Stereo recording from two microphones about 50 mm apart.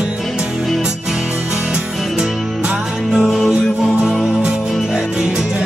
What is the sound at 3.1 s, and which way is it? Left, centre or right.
Music, centre.